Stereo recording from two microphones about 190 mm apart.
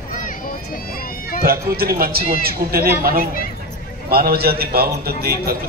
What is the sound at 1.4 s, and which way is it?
A man's voice, 55° right (ahead or behind).